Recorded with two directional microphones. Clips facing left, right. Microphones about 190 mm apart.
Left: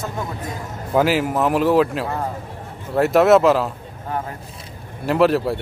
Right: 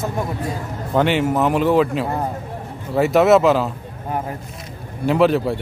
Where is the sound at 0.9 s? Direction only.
5° left (ahead or behind).